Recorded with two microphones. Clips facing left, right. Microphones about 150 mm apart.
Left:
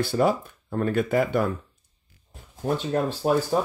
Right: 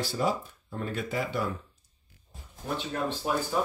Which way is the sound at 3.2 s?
45° left (ahead or behind).